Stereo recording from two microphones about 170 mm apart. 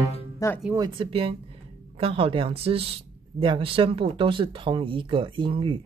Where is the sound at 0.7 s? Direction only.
25° right (ahead or behind).